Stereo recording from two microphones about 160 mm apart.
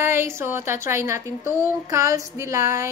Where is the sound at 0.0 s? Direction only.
15° right (ahead or behind).